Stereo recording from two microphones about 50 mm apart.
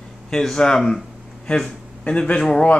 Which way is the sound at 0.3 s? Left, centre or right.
Centre.